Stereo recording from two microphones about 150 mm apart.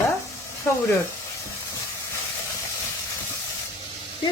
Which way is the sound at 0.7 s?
10° left (ahead or behind).